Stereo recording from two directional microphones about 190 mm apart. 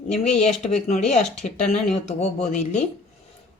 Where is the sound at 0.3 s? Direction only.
35° left (ahead or behind).